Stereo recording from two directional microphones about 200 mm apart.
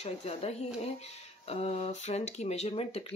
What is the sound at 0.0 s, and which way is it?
Speech, 30° left (ahead or behind).